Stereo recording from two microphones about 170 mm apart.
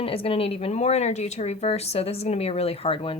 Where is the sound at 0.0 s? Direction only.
35° left (ahead or behind).